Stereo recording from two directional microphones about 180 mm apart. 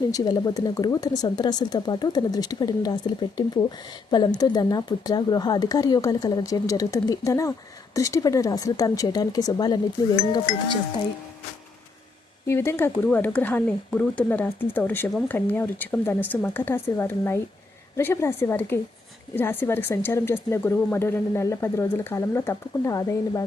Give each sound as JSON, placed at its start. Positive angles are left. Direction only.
{"t": 0.1, "sound": "speech", "side_deg": 20}
{"t": 12.5, "sound": "speech", "side_deg": 15}